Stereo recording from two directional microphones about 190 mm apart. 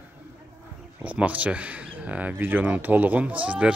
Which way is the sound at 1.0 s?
10° right (ahead or behind).